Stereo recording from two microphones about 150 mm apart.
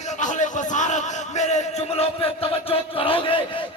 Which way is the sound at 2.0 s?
40° left (ahead or behind).